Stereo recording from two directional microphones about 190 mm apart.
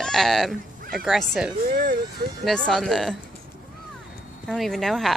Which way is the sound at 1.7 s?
50° right (ahead or behind).